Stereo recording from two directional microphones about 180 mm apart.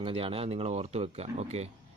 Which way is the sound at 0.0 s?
30° right (ahead or behind).